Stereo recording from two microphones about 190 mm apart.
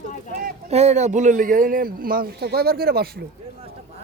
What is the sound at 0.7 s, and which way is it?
A man's voice, 35° right (ahead or behind).